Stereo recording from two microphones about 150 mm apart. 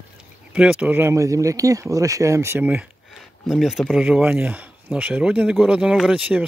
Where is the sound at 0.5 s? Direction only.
10° right (ahead or behind).